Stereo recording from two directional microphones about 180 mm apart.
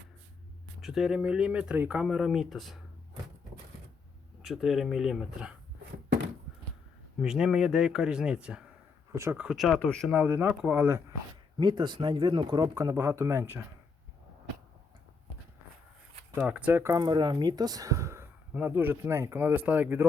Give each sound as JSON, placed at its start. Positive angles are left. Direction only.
{"t": 0.8, "sound": "speech", "side_deg": 0}
{"t": 4.4, "sound": "speech", "side_deg": 0}
{"t": 7.2, "sound": "speech", "side_deg": -5}
{"t": 9.5, "sound": "speech", "side_deg": 0}
{"t": 11.5, "sound": "speech", "side_deg": -25}
{"t": 16.3, "sound": "speech", "side_deg": -10}